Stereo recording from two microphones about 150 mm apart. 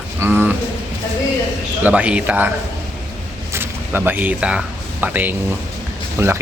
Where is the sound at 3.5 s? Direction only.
15° right (ahead or behind).